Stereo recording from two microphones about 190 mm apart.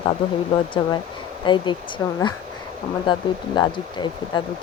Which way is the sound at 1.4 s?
25° left (ahead or behind).